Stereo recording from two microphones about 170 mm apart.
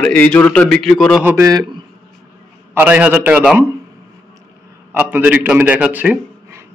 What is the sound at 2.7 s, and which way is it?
Speech, 10° right (ahead or behind).